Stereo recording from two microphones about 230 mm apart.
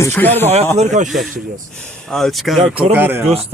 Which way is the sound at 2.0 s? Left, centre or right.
Centre.